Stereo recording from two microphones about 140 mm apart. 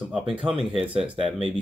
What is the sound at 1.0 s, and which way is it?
Speech, 5° right (ahead or behind).